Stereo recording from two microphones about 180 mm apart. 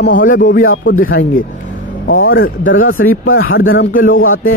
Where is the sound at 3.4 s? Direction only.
90° left.